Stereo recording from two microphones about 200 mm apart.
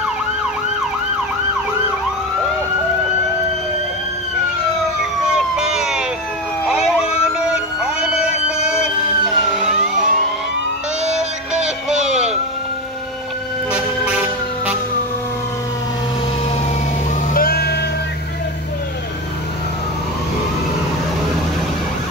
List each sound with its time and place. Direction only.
5.2 s vehicle: 5° right (ahead or behind)
6.6 s emergency vehicle: 5° right (ahead or behind)
13.7 s music: 5° right (ahead or behind)
17.3 s music: 50° left (ahead or behind)